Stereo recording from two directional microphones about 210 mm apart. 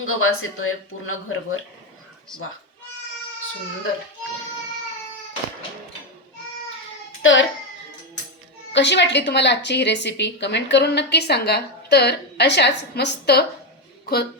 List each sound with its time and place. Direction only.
0.0 s speech: 80° left
7.2 s a child's voice: 65° left (ahead or behind)
8.7 s a woman's voice: 55° left (ahead or behind)